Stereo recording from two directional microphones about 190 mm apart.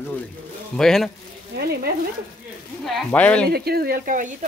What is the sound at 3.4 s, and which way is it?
Speech, 55° right (ahead or behind).